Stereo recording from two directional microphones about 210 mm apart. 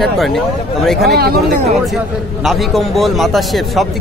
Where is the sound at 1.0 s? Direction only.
45° right (ahead or behind).